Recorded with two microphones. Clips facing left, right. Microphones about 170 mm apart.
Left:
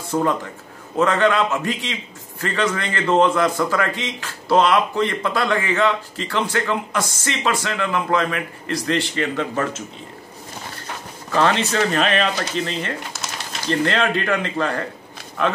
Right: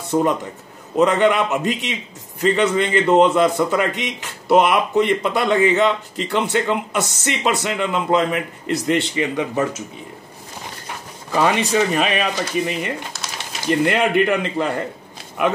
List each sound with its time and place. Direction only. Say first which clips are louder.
0.1 s a man's voice: right 2 dB; 20° right (ahead or behind)
11.3 s speech: right 1 dB; 10° right (ahead or behind)